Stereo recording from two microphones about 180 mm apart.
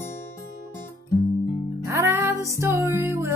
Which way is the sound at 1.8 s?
15° right (ahead or behind).